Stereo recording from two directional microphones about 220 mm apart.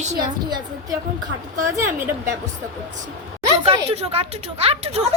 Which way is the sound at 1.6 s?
15° right (ahead or behind).